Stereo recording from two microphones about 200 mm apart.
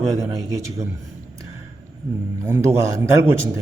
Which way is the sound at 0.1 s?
15° right (ahead or behind).